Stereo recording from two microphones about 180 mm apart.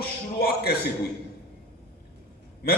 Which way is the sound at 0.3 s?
60° left (ahead or behind).